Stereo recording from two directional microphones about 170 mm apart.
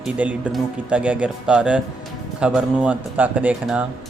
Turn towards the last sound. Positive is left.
turn(degrees=-5)  # may be behind; listen again after turning